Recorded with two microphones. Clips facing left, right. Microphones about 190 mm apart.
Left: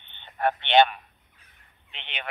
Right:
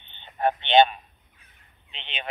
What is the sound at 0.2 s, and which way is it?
A man's voice, 20° right (ahead or behind).